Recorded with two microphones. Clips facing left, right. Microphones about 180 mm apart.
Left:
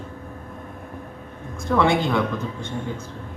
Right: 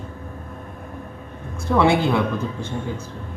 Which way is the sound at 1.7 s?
5° right (ahead or behind).